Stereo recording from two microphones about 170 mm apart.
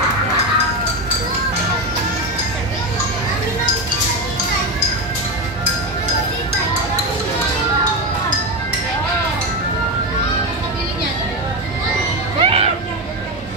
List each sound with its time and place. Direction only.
12.4 s music: 35° right (ahead or behind)